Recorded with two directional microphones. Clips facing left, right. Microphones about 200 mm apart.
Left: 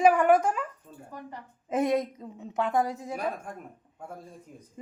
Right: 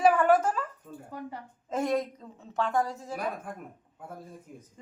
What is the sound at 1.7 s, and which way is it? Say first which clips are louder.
A woman's voice: left 3 dB; 20° left (ahead or behind).